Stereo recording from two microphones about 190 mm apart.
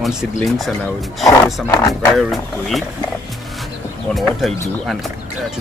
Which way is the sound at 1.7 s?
20° left (ahead or behind).